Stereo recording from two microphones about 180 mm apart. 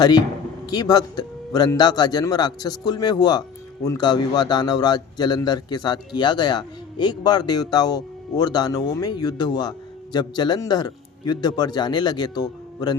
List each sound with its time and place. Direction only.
0.7 s speech: 20° left (ahead or behind)